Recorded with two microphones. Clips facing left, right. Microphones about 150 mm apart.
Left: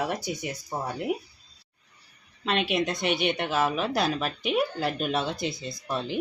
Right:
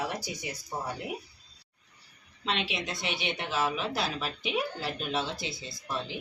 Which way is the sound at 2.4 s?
50° left (ahead or behind).